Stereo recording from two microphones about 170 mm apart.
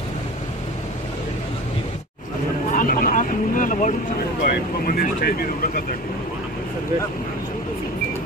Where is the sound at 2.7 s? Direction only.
55° left (ahead or behind).